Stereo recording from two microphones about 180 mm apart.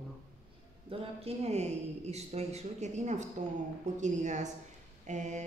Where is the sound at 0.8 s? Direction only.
35° right (ahead or behind).